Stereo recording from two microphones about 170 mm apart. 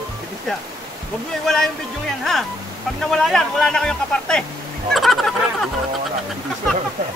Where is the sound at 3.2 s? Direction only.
Centre (ahead or behind).